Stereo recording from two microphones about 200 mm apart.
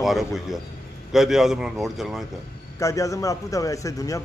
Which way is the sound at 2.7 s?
15° left (ahead or behind).